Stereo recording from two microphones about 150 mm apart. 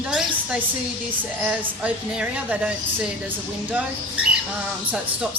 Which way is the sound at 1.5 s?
5° right (ahead or behind).